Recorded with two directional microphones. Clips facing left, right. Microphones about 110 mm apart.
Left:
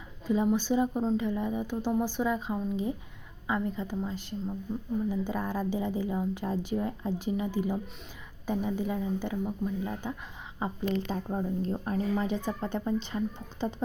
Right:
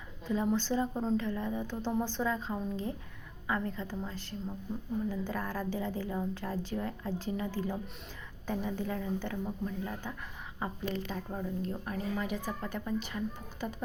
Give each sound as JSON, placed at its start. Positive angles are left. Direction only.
{"t": 0.4, "sound": "speech", "side_deg": 15}
{"t": 11.0, "sound": "speech", "side_deg": 30}